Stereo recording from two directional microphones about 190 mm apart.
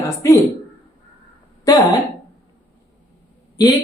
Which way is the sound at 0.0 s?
15° left (ahead or behind).